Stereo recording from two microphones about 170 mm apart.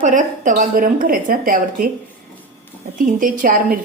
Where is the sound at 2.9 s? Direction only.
55° right (ahead or behind).